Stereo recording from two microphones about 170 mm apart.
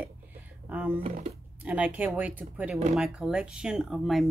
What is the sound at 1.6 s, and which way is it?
Speech, 10° right (ahead or behind).